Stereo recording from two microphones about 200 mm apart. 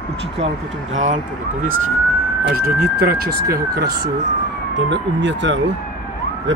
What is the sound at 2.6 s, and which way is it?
Speech, 50° right (ahead or behind).